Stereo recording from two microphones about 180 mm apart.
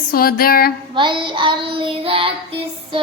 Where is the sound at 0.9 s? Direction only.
25° right (ahead or behind).